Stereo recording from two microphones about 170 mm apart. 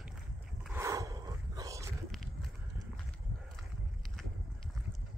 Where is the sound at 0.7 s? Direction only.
20° right (ahead or behind).